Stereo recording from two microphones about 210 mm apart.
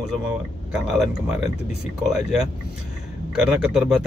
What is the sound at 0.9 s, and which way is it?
Speech, 5° right (ahead or behind).